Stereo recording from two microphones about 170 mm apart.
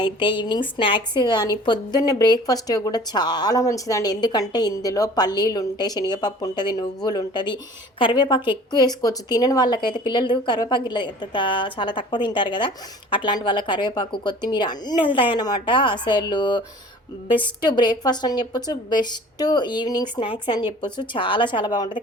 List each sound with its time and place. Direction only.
0.0 s a woman's voice: 30° left (ahead or behind)